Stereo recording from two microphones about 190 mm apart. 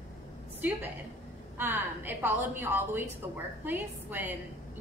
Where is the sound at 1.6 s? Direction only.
10° right (ahead or behind).